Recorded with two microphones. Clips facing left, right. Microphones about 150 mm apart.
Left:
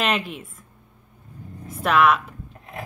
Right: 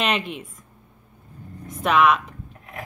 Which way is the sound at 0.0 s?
Centre (ahead or behind).